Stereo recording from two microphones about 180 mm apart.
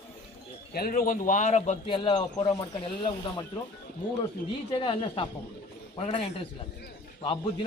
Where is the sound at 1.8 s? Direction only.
25° left (ahead or behind).